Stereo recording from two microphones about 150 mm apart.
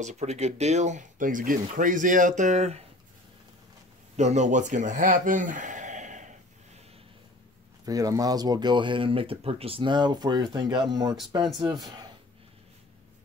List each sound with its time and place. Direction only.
0.0 s speech: 50° right (ahead or behind)
4.2 s speech: 50° right (ahead or behind)
7.8 s speech: 25° right (ahead or behind)